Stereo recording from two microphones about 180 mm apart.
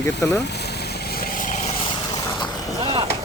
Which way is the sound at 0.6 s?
65° left (ahead or behind).